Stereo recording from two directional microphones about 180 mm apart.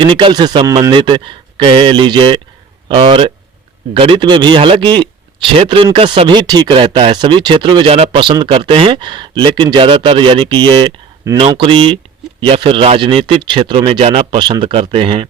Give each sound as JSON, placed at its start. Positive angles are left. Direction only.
{"t": 0.0, "sound": "speech", "side_deg": -25}